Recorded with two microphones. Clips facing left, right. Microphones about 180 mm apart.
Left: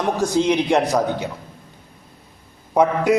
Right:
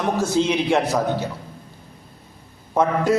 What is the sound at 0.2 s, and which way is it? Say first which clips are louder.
A man's voice: left 3 dB; 15° left (ahead or behind).